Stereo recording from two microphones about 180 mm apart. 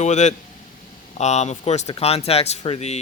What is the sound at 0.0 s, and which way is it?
Speech, 40° left (ahead or behind).